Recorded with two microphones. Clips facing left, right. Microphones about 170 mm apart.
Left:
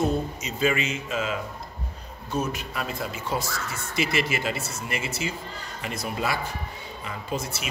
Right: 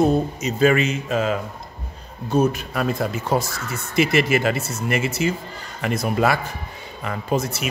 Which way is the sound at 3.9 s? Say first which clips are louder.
Right 8 dB; 55° right (ahead or behind).